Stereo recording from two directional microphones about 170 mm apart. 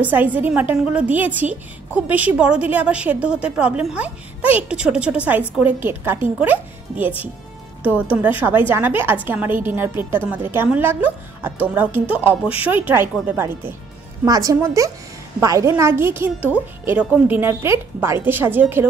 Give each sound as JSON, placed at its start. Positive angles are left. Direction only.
{"t": 0.0, "sound": "a woman's voice", "side_deg": -10}
{"t": 6.4, "sound": "a woman's voice", "side_deg": -10}